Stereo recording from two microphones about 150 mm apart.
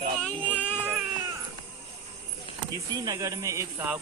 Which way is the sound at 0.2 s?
10° left (ahead or behind).